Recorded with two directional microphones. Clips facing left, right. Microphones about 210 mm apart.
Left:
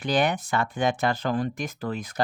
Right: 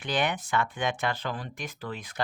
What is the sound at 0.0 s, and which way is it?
Speech, 40° left (ahead or behind).